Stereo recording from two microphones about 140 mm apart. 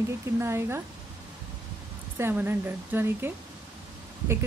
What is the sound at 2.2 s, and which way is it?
Speech, 15° right (ahead or behind).